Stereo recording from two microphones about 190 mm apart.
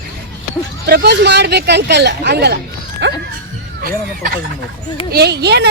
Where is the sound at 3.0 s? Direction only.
70° right (ahead or behind).